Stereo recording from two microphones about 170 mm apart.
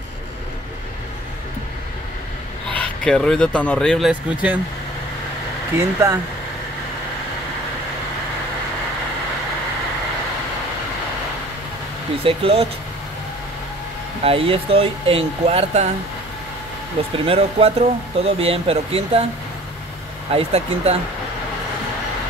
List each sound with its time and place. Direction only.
2.7 s speech: 5° left (ahead or behind)
4.1 s speech: 10° right (ahead or behind)
5.8 s speech: 20° right (ahead or behind)
12.2 s speech: 35° right (ahead or behind)
14.2 s speech: 35° right (ahead or behind)
17.2 s speech: 35° right (ahead or behind)
20.2 s speech: 35° right (ahead or behind)